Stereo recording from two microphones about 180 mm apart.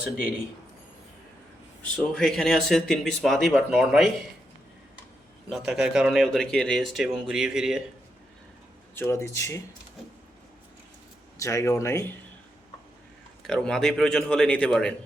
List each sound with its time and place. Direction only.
2.0 s speech: centre (ahead or behind)
5.5 s speech: centre (ahead or behind)
9.0 s speech: 15° left (ahead or behind)
11.3 s speech: 15° left (ahead or behind)
13.4 s speech: 5° left (ahead or behind)